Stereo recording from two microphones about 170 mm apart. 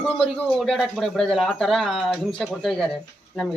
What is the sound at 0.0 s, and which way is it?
Speech, centre (ahead or behind).